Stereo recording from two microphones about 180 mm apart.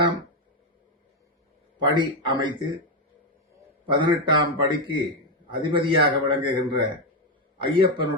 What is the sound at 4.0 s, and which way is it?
A man's voice, 25° right (ahead or behind).